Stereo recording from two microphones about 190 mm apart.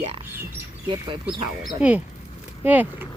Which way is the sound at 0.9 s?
25° right (ahead or behind).